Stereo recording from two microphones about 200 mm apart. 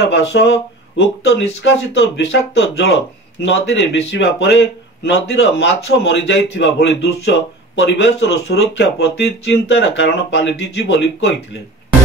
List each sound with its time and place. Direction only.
0.0 s speech: 60° left (ahead or behind)